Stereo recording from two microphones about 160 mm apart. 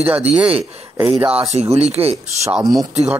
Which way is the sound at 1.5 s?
40° right (ahead or behind).